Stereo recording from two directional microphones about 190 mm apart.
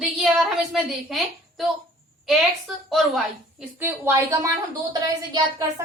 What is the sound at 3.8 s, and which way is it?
A woman's voice, 10° right (ahead or behind).